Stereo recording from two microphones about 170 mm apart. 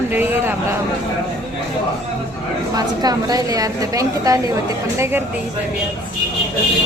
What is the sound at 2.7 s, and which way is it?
A woman's voice, 25° right (ahead or behind).